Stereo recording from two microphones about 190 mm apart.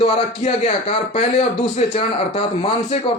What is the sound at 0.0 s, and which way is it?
Speech, 30° left (ahead or behind).